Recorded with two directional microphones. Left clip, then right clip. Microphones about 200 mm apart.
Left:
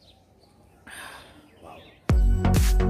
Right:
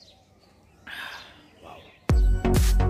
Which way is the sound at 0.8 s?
5° left (ahead or behind).